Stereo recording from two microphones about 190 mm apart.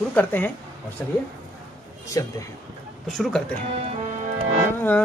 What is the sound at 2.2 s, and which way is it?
Speech, 20° left (ahead or behind).